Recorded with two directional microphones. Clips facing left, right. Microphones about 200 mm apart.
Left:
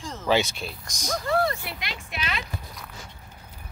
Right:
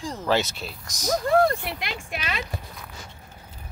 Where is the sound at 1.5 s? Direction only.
50° right (ahead or behind).